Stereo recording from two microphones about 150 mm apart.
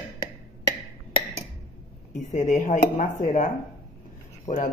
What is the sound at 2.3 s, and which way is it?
Speech, 55° left (ahead or behind).